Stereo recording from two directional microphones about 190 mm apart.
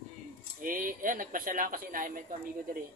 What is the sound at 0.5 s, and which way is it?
Speech, 45° right (ahead or behind).